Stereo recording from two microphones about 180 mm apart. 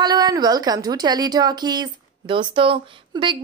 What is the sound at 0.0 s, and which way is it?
A woman's voice, 20° right (ahead or behind).